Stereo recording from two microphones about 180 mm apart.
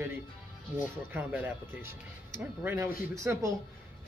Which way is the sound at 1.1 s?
10° right (ahead or behind).